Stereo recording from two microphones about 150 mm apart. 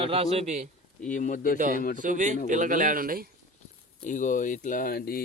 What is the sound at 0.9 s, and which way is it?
Speech, 60° left (ahead or behind).